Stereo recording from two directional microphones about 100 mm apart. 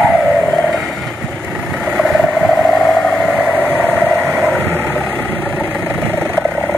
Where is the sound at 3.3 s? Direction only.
15° right (ahead or behind).